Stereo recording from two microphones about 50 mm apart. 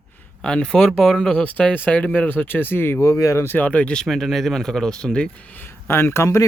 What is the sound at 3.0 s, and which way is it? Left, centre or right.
Speech, left.